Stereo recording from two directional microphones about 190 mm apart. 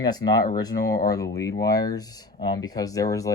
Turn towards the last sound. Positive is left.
turn(degrees=15)  # may be behind; listen again after turning